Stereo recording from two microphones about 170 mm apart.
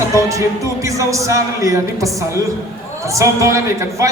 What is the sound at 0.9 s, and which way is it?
Speech, 20° right (ahead or behind).